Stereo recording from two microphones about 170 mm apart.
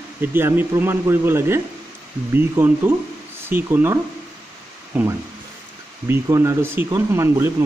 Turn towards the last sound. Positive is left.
turn(degrees=-20)  # may be behind; listen again after turning